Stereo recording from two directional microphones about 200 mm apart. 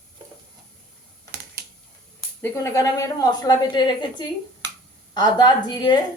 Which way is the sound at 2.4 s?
15° left (ahead or behind).